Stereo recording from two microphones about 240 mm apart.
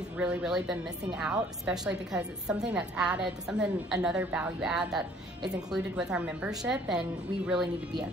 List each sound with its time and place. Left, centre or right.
0.2 s a woman's voice: centre